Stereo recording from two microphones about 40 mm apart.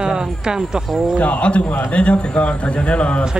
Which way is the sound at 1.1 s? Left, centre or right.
Left.